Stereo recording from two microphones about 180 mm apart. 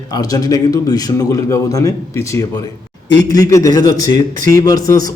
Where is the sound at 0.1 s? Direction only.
20° left (ahead or behind).